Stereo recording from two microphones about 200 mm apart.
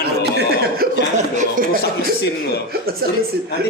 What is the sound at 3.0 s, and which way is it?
Speech, 50° right (ahead or behind).